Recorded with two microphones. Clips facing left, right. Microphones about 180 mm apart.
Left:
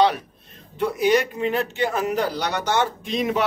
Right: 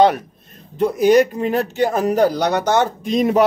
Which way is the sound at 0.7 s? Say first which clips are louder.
Right 6 dB; 45° right (ahead or behind).